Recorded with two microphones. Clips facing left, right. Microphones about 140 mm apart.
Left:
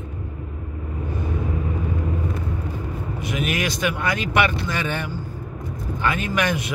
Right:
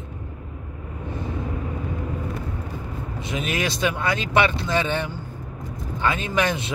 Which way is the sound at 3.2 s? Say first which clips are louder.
Left 1 dB; 30° right (ahead or behind).